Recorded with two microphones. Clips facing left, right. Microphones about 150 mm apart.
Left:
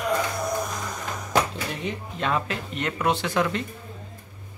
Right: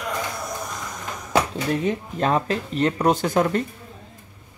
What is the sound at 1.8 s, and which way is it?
Speech, 40° right (ahead or behind).